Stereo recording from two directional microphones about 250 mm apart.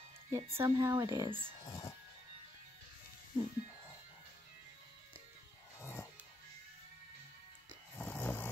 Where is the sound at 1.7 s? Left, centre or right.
Centre.